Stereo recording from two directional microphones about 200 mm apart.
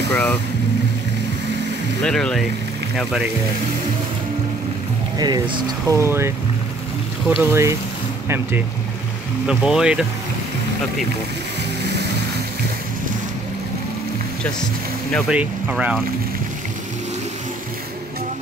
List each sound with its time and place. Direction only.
2.0 s speech: 5° left (ahead or behind)
5.2 s speech: 20° right (ahead or behind); by 10.0 s 5° right (ahead or behind)
15.1 s speech: 5° right (ahead or behind)